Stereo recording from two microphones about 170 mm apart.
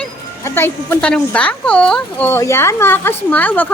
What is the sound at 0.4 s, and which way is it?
Speech, 15° left (ahead or behind).